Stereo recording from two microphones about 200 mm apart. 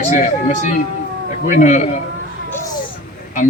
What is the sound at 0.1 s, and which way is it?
A man's voice, 40° left (ahead or behind).